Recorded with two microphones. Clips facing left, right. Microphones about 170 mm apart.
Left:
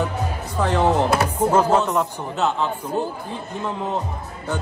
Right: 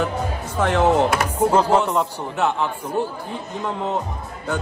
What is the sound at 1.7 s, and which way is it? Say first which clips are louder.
Speech: even; 15° right (ahead or behind).